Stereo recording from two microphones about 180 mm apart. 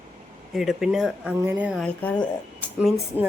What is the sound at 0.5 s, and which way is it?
A woman's voice, centre (ahead or behind).